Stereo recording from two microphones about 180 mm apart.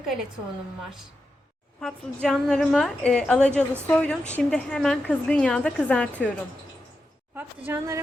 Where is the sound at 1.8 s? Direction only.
Centre (ahead or behind).